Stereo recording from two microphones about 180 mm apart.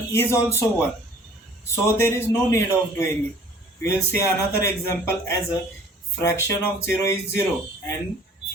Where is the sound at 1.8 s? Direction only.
15° left (ahead or behind).